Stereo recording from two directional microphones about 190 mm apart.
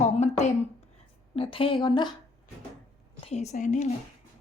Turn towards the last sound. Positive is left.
turn(degrees=40)  # may be behind; listen again after turning